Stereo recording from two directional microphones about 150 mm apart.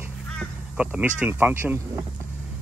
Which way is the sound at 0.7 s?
10° right (ahead or behind).